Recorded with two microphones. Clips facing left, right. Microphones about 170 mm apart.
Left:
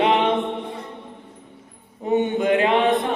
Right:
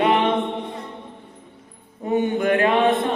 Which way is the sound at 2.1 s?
20° left (ahead or behind).